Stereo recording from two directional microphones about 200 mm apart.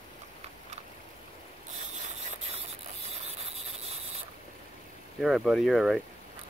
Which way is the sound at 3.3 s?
30° right (ahead or behind).